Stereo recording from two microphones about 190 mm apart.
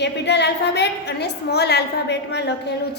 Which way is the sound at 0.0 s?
65° left (ahead or behind).